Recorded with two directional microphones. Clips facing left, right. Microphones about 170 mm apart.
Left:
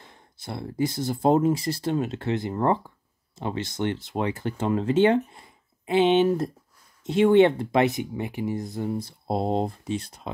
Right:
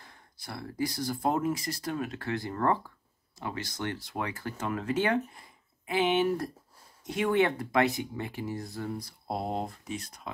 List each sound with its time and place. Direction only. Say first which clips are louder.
0.0 s speech: left 6 dB; 25° left (ahead or behind)